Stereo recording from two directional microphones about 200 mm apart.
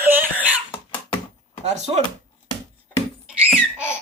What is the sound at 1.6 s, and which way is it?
Speech, 35° right (ahead or behind).